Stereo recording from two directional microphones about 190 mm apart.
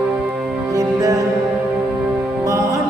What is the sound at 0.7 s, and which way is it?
Music, 20° right (ahead or behind).